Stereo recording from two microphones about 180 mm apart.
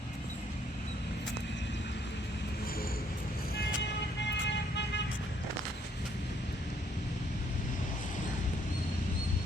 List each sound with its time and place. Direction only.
4.4 s vehicle: 75° left (ahead or behind)